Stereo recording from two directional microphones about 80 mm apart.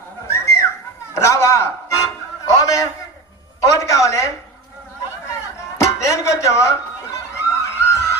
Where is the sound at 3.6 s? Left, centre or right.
Left.